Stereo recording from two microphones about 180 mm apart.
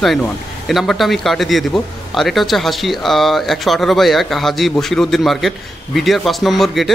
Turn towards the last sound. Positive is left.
turn(degrees=0)  # may be behind; listen again after turning